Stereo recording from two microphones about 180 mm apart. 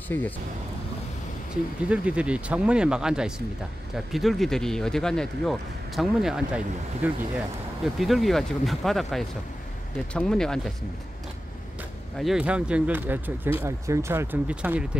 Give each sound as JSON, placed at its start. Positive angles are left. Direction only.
{"t": 0.1, "sound": "speech", "side_deg": 15}
{"t": 1.9, "sound": "speech", "side_deg": -5}
{"t": 12.2, "sound": "speech", "side_deg": -5}